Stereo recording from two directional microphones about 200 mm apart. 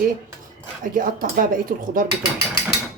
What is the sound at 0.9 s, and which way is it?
Speech, 40° right (ahead or behind).